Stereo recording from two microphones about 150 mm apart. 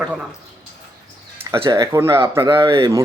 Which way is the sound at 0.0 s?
5° right (ahead or behind).